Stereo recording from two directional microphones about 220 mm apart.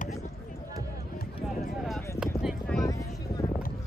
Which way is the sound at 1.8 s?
Centre (ahead or behind).